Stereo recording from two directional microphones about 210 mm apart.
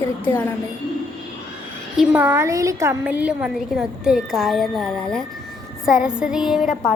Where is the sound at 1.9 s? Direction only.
10° right (ahead or behind).